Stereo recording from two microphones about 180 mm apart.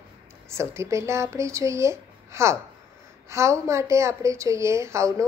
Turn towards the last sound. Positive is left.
turn(degrees=-15)  # may be behind; listen again after turning